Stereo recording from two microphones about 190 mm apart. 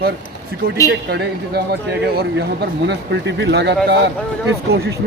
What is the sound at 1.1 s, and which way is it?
Speech, 60° right (ahead or behind).